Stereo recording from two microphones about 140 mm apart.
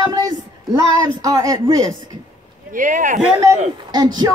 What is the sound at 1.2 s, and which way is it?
Speech, 25° right (ahead or behind).